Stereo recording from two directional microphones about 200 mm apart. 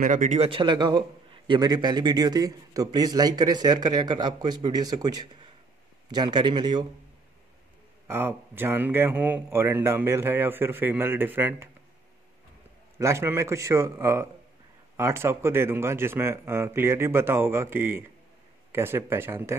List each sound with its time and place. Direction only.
0.0 s a man's voice: 40° right (ahead or behind); by 6.9 s 20° right (ahead or behind)
8.1 s a man's voice: 10° right (ahead or behind)
13.0 s a man's voice: 15° right (ahead or behind)